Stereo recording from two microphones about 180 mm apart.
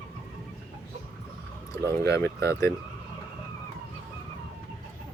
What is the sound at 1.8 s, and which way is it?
Speech, 15° left (ahead or behind).